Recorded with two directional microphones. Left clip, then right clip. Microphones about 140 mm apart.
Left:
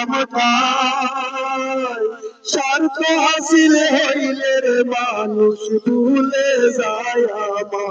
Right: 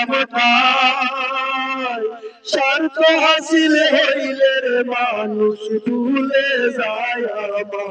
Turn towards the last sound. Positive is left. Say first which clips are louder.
# left 3 dB
turn(degrees=40)  # may be behind; listen again after turning